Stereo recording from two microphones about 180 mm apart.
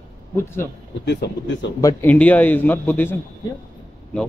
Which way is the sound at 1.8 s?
10° left (ahead or behind).